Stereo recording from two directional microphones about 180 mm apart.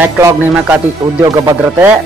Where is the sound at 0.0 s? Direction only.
10° right (ahead or behind).